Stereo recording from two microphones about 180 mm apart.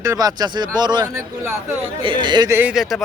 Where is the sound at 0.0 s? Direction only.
20° right (ahead or behind).